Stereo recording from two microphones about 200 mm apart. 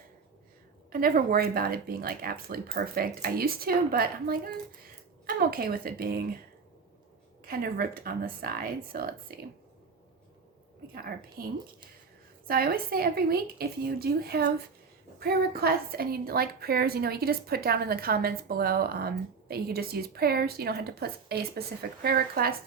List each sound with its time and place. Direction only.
0.9 s a woman's voice: 45° right (ahead or behind)
7.4 s a woman's voice: 50° right (ahead or behind)
10.9 s a woman's voice: 45° right (ahead or behind)
12.5 s a woman's voice: 50° right (ahead or behind)